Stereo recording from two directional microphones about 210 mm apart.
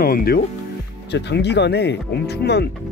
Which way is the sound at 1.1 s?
55° left (ahead or behind).